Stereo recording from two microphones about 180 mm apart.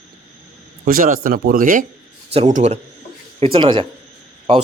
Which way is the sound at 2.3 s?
40° right (ahead or behind).